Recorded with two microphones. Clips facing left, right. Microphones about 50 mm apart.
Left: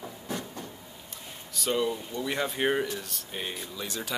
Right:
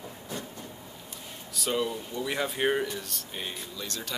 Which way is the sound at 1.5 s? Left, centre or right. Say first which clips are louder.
Left 1 dB; centre.